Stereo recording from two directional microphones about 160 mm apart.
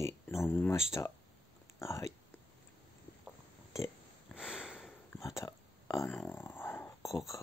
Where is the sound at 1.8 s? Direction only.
20° left (ahead or behind).